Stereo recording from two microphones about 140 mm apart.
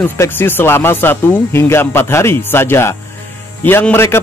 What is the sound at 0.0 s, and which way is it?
A man's voice, 15° left (ahead or behind).